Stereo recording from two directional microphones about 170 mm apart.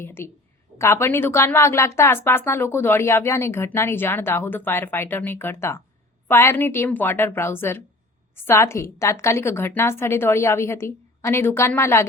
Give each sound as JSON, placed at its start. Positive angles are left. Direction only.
{"t": 0.0, "sound": "a woman's voice", "side_deg": 15}